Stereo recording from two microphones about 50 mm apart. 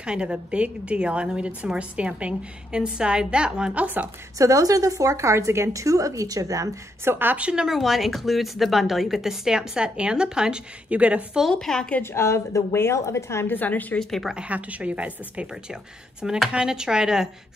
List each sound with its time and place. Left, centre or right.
0.0 s a woman's voice: right
3.7 s a woman's voice: right
4.4 s a woman's voice: right
7.3 s a woman's voice: right
7.6 s a woman's voice: centre; by 11.2 s right
11.6 s a woman's voice: centre
12.0 s a woman's voice: left
13.5 s a woman's voice: left
14.3 s a woman's voice: right
15.5 s a woman's voice: centre